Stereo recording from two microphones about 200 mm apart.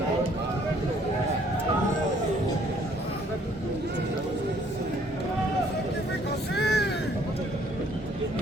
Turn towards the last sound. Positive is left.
turn(degrees=55)  # may be behind; listen again after turning